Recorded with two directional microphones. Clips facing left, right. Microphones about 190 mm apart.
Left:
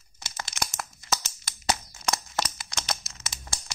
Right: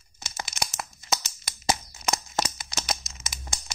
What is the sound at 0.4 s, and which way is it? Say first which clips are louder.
Tearing: right 1 dB; 15° right (ahead or behind).